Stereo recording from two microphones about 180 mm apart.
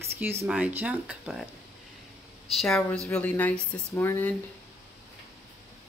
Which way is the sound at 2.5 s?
Centre (ahead or behind).